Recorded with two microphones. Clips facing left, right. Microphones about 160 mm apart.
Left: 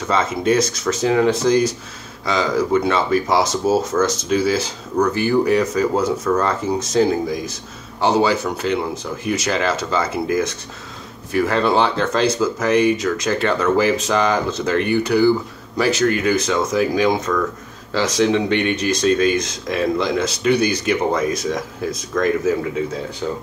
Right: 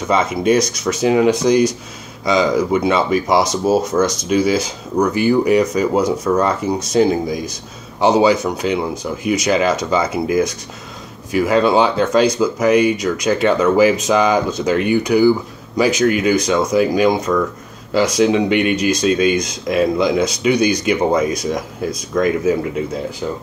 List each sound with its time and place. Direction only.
0.1 s speech: 15° right (ahead or behind)
18.1 s speech: 10° right (ahead or behind)